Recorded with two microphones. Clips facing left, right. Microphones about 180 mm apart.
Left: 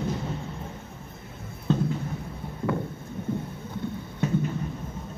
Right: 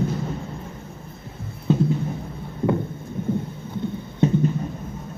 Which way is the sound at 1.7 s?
10° right (ahead or behind).